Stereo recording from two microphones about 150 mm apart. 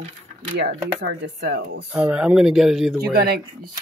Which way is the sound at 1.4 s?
90° right.